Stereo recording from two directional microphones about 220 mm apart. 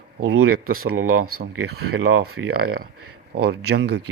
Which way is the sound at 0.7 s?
40° right (ahead or behind).